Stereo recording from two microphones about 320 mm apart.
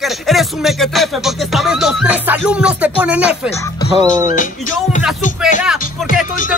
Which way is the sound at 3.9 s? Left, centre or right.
Centre.